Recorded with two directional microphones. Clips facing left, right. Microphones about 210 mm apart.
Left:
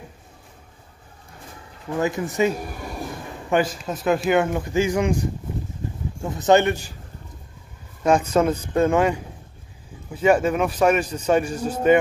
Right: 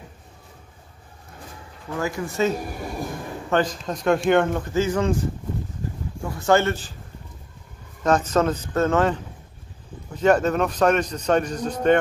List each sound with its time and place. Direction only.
2.0 s a man's voice: 20° left (ahead or behind)
8.0 s a man's voice: 10° left (ahead or behind)